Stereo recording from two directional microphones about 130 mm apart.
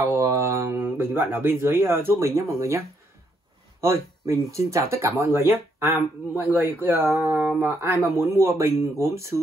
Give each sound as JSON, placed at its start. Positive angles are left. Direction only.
{"t": 0.0, "sound": "speech", "side_deg": -25}
{"t": 3.8, "sound": "speech", "side_deg": -20}